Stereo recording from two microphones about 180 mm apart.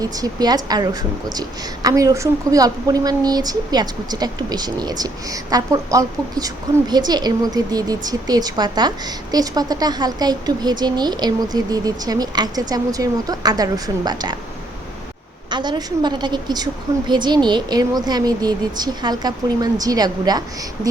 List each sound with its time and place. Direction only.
0.0 s a woman's voice: 20° right (ahead or behind)
15.4 s a woman's voice: 25° right (ahead or behind)